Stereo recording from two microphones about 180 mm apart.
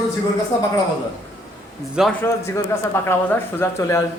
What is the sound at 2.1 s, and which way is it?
A man's voice, 10° left (ahead or behind).